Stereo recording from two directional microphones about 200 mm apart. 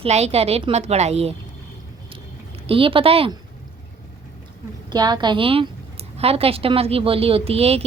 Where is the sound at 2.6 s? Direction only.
25° right (ahead or behind).